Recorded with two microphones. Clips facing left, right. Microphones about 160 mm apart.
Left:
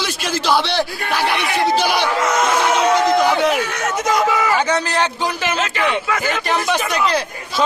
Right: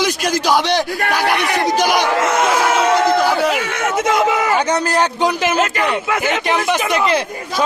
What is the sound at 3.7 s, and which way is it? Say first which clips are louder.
Speech: right 3 dB; 25° right (ahead or behind).